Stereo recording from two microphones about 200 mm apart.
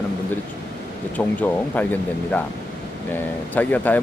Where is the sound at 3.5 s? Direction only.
10° left (ahead or behind).